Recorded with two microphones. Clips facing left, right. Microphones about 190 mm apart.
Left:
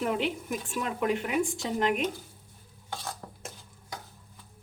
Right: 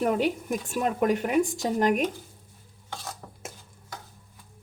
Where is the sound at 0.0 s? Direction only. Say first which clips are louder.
Right 4 dB; 45° right (ahead or behind).